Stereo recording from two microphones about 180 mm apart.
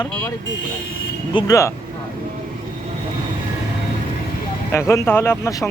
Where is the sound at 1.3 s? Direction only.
20° left (ahead or behind).